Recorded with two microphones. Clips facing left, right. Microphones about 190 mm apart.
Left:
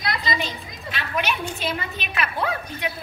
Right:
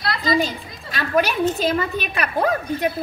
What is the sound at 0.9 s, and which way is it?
A woman's voice, 40° right (ahead or behind).